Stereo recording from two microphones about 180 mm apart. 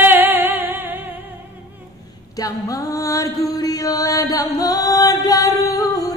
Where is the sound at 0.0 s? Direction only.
10° right (ahead or behind).